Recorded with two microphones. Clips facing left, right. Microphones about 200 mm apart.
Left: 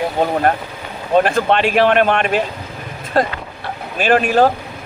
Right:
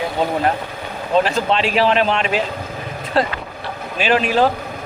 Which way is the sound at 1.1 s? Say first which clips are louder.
Left 3 dB; 55° left (ahead or behind).